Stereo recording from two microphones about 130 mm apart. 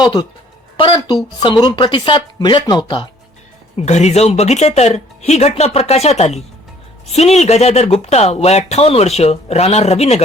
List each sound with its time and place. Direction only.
0.8 s speech: 40° left (ahead or behind)
3.8 s speech: 60° left (ahead or behind)